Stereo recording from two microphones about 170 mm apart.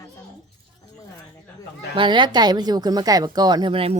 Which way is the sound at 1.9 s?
30° right (ahead or behind).